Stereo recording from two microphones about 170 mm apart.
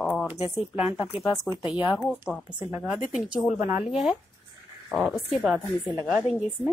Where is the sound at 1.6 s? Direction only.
30° left (ahead or behind).